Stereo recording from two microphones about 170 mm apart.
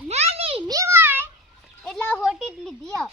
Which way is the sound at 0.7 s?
15° right (ahead or behind).